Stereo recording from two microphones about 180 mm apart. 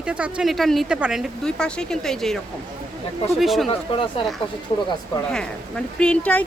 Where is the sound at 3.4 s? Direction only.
Centre (ahead or behind).